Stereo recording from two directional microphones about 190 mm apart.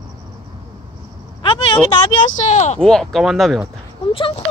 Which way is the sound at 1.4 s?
25° left (ahead or behind).